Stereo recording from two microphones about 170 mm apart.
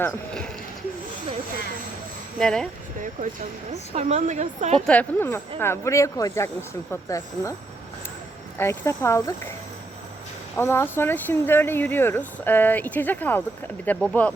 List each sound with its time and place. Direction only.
2.4 s speech: 5° left (ahead or behind)
3.7 s a woman's voice: 40° right (ahead or behind)
4.9 s speech: 10° left (ahead or behind)
8.5 s speech: 15° left (ahead or behind)
10.6 s speech: 15° left (ahead or behind)